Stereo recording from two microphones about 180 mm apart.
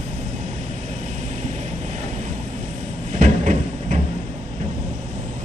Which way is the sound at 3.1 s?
40° right (ahead or behind).